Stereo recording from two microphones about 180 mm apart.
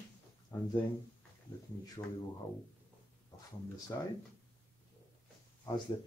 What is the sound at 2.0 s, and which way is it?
Speech, 25° left (ahead or behind).